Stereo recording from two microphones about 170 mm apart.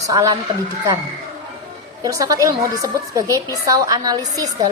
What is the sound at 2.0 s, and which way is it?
A woman's voice, 20° right (ahead or behind).